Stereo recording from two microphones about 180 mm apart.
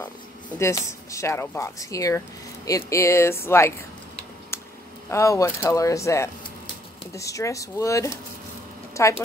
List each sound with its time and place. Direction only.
0.6 s speech: 15° left (ahead or behind)
5.1 s speech: 15° left (ahead or behind)